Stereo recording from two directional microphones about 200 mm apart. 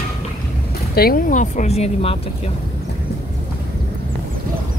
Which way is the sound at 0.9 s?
45° left (ahead or behind).